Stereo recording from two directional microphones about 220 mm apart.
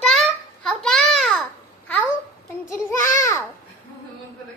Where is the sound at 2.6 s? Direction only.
15° left (ahead or behind).